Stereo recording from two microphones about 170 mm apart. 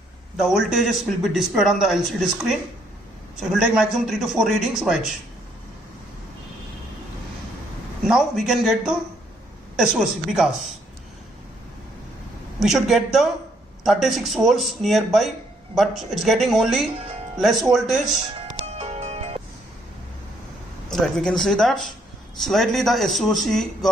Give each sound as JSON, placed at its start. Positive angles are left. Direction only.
{"t": 0.4, "sound": "speech", "side_deg": -5}
{"t": 8.1, "sound": "speech", "side_deg": -5}
{"t": 12.5, "sound": "speech", "side_deg": 0}
{"t": 18.8, "sound": "music", "side_deg": -40}
{"t": 20.9, "sound": "speech", "side_deg": 5}